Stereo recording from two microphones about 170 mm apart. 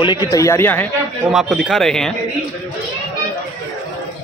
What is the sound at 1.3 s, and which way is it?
Speech, 5° right (ahead or behind).